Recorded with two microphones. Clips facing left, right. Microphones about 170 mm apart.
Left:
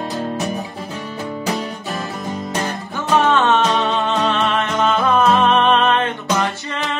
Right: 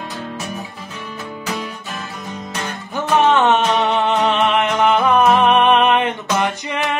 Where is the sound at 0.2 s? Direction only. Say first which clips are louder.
Left 5 dB; 40° left (ahead or behind).